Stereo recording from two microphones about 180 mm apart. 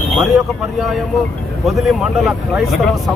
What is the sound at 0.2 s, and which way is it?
Speech, centre (ahead or behind).